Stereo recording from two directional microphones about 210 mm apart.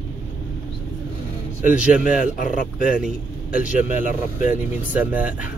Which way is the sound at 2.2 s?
40° left (ahead or behind).